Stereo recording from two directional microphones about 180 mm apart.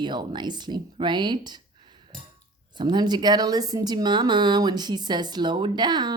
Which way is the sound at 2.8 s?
25° right (ahead or behind).